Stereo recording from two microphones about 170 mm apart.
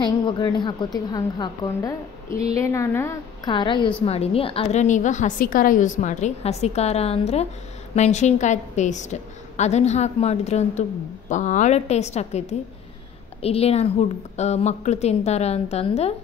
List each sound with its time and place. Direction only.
0.0 s a woman's voice: 25° left (ahead or behind)
3.4 s a woman's voice: 25° left (ahead or behind)